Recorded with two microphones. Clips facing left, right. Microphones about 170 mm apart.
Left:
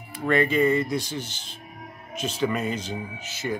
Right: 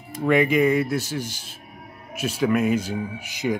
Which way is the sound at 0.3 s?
15° right (ahead or behind).